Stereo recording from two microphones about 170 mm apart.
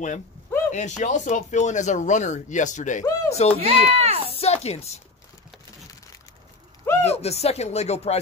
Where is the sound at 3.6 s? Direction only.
35° right (ahead or behind).